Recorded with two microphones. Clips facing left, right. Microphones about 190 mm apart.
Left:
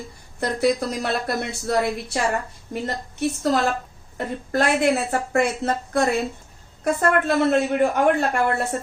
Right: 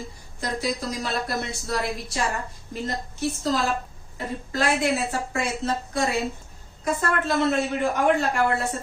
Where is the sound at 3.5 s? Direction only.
60° left (ahead or behind).